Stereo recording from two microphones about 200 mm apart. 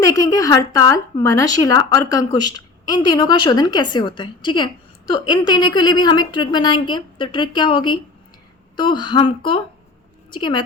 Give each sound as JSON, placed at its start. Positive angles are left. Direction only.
{"t": 0.0, "sound": "a woman's voice", "side_deg": 15}